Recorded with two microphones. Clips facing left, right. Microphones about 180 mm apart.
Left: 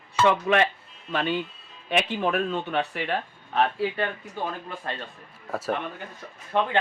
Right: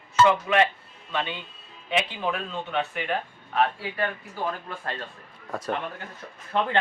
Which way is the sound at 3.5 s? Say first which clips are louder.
Left 2 dB; 25° left (ahead or behind).